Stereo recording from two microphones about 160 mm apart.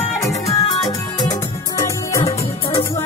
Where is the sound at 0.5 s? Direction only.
25° left (ahead or behind).